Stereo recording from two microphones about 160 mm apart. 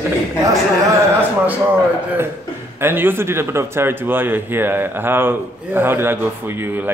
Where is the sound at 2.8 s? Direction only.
15° right (ahead or behind).